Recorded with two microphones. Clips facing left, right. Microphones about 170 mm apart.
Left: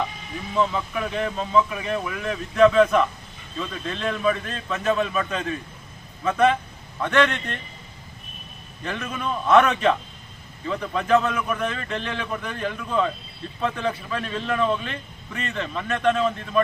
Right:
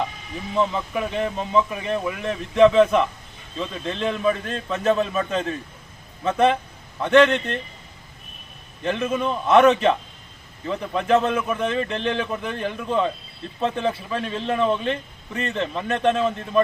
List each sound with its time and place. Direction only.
0.5 s a man's voice: 25° right (ahead or behind)
8.8 s a man's voice: 25° right (ahead or behind)